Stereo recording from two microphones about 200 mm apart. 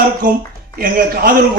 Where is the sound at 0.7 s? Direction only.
45° right (ahead or behind).